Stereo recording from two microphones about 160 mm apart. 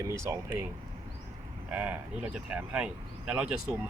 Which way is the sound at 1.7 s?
10° right (ahead or behind).